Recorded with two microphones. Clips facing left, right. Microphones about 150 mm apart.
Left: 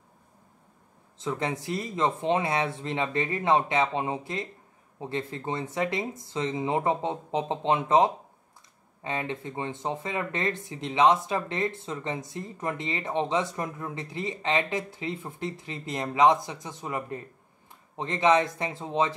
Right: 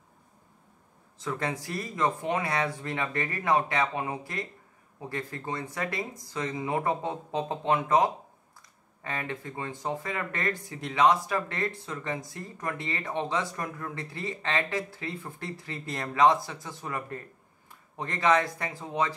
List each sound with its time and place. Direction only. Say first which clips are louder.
1.1 s speech: left 2 dB; 20° left (ahead or behind)